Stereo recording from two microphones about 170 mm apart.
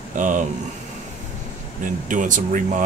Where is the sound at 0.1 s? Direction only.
50° right (ahead or behind).